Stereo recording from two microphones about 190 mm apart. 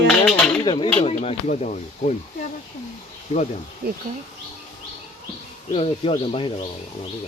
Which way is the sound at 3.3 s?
35° left (ahead or behind).